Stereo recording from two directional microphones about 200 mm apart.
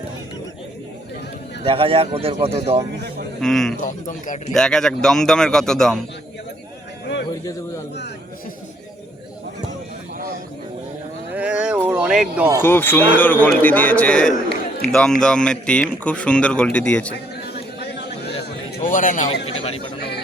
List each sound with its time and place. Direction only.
1.6 s speech: 25° right (ahead or behind)
3.4 s speech: centre (ahead or behind)
3.8 s a man's voice: 40° left (ahead or behind)
4.5 s speech: 5° left (ahead or behind)
11.3 s a sound: 5° right (ahead or behind)
12.6 s a man's voice: 10° left (ahead or behind)
17.4 s a sound: 55° left (ahead or behind)
18.8 s a sound: 40° left (ahead or behind)
19.5 s speech: 30° left (ahead or behind)